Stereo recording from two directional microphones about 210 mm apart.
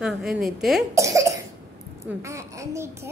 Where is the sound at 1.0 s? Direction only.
15° right (ahead or behind).